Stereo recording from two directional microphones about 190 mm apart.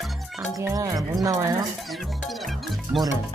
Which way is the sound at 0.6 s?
15° right (ahead or behind).